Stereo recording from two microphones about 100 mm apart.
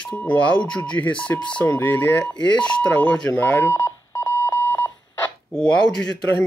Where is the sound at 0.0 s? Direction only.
15° left (ahead or behind).